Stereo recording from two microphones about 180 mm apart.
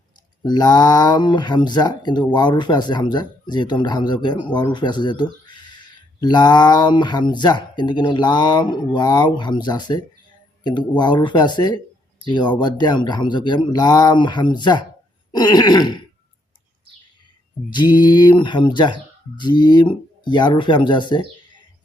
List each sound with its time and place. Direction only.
0.4 s speech: 25° left (ahead or behind)
17.7 s speech: 25° left (ahead or behind)